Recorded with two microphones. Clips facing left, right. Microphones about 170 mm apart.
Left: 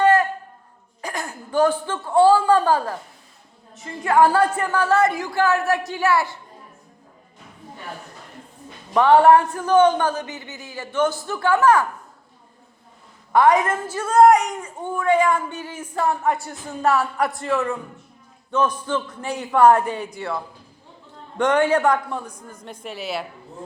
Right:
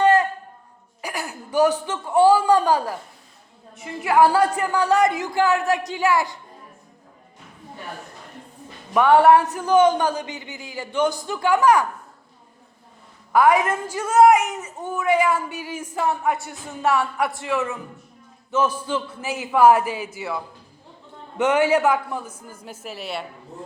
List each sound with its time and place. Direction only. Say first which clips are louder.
0.0 s a sound: even; 20° right (ahead or behind)
1.9 s a woman's voice: left 2 dB; 15° right (ahead or behind)
9.0 s speech: left 1 dB; 20° left (ahead or behind)
9.3 s a woman's voice: left 1 dB; 10° right (ahead or behind)
13.3 s a woman's voice: left 1 dB; 10° right (ahead or behind)